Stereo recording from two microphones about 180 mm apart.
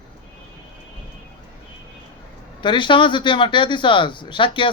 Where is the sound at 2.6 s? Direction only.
25° left (ahead or behind).